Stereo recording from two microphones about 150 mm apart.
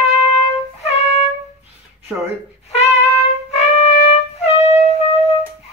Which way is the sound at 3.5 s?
45° left (ahead or behind).